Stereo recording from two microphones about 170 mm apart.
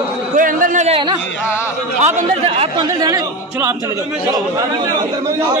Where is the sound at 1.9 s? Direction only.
40° right (ahead or behind).